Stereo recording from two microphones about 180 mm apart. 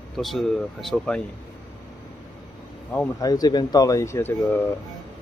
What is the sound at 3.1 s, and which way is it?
Speech, 20° left (ahead or behind).